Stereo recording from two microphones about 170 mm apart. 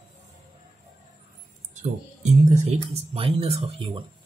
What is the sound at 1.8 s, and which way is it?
Speech, 45° right (ahead or behind).